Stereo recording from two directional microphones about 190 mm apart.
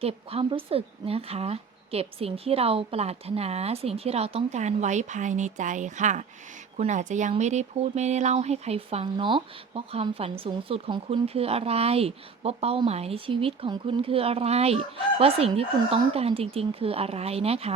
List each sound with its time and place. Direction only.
0.0 s speech: 30° right (ahead or behind)